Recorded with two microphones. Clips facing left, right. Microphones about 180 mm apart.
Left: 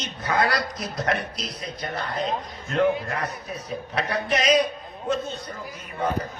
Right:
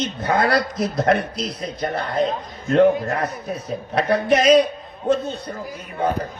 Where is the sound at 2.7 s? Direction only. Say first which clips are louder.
Right 7 dB; 40° right (ahead or behind).